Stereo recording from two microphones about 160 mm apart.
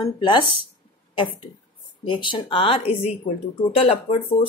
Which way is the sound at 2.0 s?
30° left (ahead or behind).